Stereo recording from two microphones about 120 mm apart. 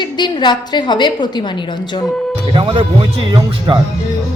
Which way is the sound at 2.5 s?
45° right (ahead or behind).